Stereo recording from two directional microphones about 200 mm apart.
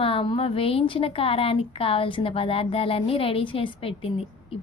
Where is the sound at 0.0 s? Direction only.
25° left (ahead or behind).